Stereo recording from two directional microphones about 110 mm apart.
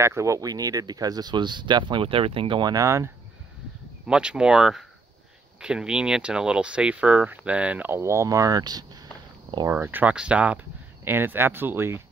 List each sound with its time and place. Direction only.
0.0 s speech: 25° right (ahead or behind); by 2.7 s 50° right (ahead or behind)
2.7 s speech: 30° right (ahead or behind)
4.0 s speech: 10° right (ahead or behind); by 8.8 s 35° right (ahead or behind)
9.7 s speech: 20° right (ahead or behind)